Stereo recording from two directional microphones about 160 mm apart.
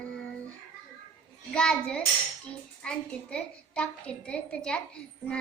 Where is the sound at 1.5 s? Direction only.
5° left (ahead or behind).